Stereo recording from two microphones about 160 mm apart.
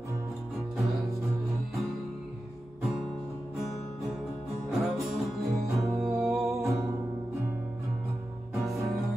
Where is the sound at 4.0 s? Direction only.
Centre (ahead or behind).